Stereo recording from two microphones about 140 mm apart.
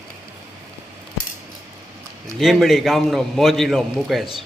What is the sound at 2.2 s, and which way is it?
A man's voice, centre (ahead or behind).